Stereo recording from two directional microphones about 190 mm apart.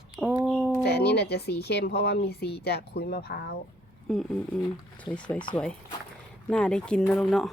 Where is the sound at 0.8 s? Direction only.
60° left (ahead or behind).